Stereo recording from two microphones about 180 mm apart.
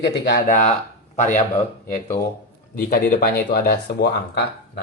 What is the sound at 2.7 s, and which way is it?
Speech, 50° left (ahead or behind).